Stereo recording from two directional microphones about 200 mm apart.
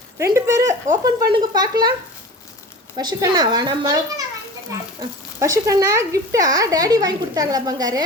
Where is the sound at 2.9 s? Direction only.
20° right (ahead or behind).